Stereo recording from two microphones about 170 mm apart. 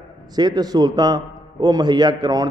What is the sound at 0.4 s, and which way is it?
A man's voice, 25° right (ahead or behind).